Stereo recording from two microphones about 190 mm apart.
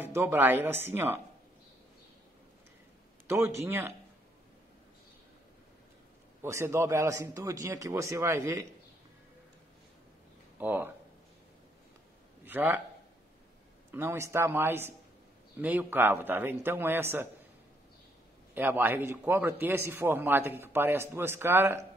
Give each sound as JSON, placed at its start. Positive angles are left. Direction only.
{"t": 0.0, "sound": "a man's voice", "side_deg": -10}
{"t": 3.3, "sound": "a man's voice", "side_deg": -15}
{"t": 6.4, "sound": "a man's voice", "side_deg": -15}
{"t": 10.6, "sound": "speech", "side_deg": -10}
{"t": 12.4, "sound": "a man's voice", "side_deg": -10}
{"t": 13.9, "sound": "a man's voice", "side_deg": -15}
{"t": 18.5, "sound": "a man's voice", "side_deg": -10}